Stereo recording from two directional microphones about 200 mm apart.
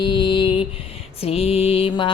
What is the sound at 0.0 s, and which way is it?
Mantra, 25° left (ahead or behind).